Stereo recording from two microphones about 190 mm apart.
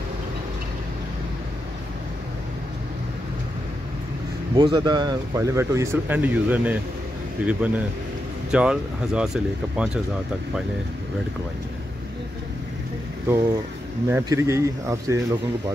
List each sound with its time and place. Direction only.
4.6 s speech: 25° right (ahead or behind); by 9.8 s 5° right (ahead or behind)
14.0 s speech: 15° right (ahead or behind)